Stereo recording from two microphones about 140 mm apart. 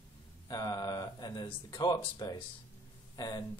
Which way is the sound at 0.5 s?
30° left (ahead or behind).